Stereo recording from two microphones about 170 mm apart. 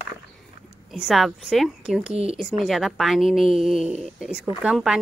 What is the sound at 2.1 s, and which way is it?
Speech, 35° right (ahead or behind).